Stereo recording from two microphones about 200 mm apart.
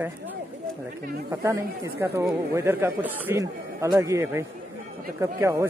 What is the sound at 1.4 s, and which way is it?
Speech, 15° right (ahead or behind).